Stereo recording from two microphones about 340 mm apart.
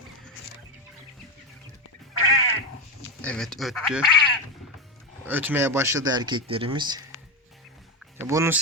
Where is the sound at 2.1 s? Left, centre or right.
Left.